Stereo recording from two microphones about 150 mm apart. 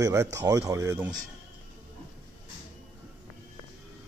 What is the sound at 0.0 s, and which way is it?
Speech, 20° right (ahead or behind).